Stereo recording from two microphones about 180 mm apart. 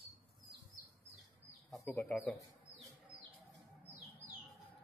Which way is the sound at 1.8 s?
15° left (ahead or behind).